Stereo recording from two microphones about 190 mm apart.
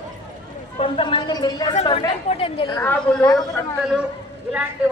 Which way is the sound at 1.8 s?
30° left (ahead or behind).